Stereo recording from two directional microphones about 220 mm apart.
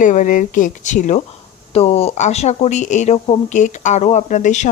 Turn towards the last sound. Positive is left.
turn(degrees=35)  # may be behind; listen again after turning